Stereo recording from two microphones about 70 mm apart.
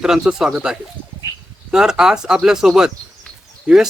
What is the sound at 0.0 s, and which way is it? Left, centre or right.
Speech, centre.